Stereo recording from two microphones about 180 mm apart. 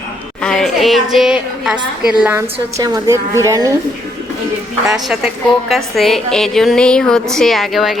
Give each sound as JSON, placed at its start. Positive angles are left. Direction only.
{"t": 0.4, "sound": "a woman's voice", "side_deg": 5}
{"t": 2.7, "sound": "a woman's voice", "side_deg": -20}
{"t": 4.9, "sound": "a woman's voice", "side_deg": 0}